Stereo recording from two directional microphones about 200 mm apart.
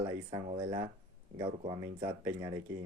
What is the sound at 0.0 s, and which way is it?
Speech, 20° right (ahead or behind).